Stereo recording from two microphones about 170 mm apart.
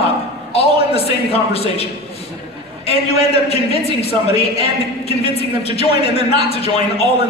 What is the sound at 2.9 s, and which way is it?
A man's voice, 35° left (ahead or behind).